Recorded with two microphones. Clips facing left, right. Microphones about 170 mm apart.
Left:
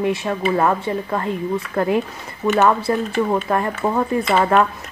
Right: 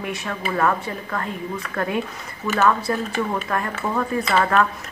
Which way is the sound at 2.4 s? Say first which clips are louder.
Left 6 dB; 35° left (ahead or behind).